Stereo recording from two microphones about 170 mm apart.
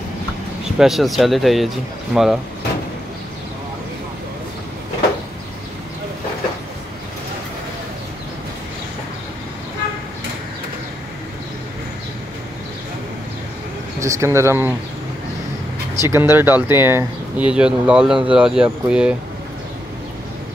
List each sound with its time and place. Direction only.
0.7 s speech: centre (ahead or behind)
13.9 s speech: 20° right (ahead or behind)
16.0 s speech: 15° right (ahead or behind)